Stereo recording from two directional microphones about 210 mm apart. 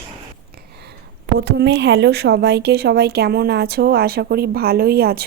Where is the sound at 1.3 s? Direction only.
50° right (ahead or behind).